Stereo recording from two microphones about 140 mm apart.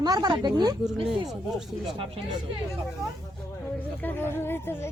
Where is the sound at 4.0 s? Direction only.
15° left (ahead or behind).